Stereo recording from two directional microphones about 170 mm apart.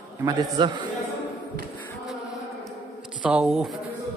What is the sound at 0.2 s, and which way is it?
Speech, 20° right (ahead or behind).